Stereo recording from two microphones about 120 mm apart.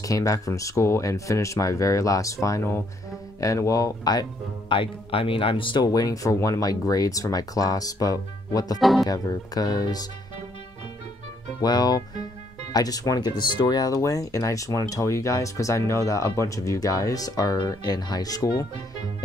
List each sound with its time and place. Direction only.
0.0 s speech: 30° left (ahead or behind); by 5.9 s 45° left (ahead or behind)
5.9 s speech: 30° left (ahead or behind)
11.6 s speech: 35° left (ahead or behind)